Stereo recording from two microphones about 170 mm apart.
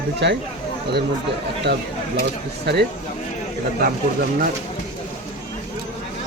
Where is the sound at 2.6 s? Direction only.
70° right (ahead or behind).